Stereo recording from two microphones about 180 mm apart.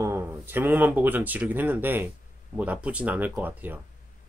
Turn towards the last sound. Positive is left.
turn(degrees=-10)  # may be behind; listen again after turning